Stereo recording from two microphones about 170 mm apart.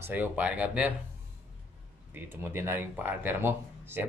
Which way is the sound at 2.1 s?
10° right (ahead or behind).